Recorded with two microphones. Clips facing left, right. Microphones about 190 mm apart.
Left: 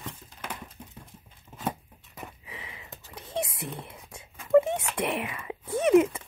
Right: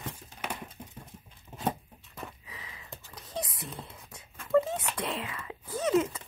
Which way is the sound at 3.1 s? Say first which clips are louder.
Left 5 dB; 25° left (ahead or behind).